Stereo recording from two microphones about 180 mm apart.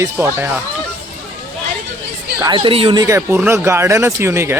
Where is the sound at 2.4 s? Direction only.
25° right (ahead or behind).